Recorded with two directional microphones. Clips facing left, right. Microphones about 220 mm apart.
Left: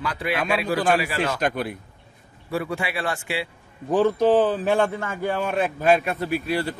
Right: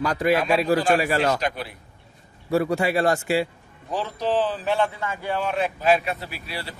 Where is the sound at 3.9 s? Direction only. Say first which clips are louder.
Left 7 dB; 50° left (ahead or behind).